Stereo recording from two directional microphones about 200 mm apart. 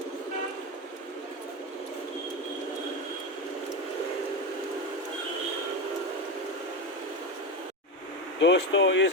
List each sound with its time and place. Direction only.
8.4 s speech: 60° left (ahead or behind)